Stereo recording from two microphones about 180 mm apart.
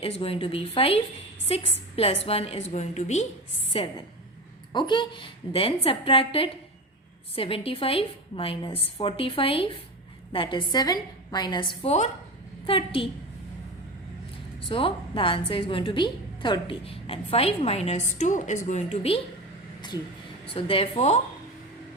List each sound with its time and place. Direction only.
0.0 s a woman's voice: 30° left (ahead or behind)
14.7 s a woman's voice: 30° left (ahead or behind)
20.5 s a woman's voice: 30° left (ahead or behind)